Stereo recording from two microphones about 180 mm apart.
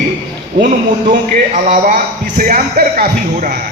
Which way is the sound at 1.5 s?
45° right (ahead or behind).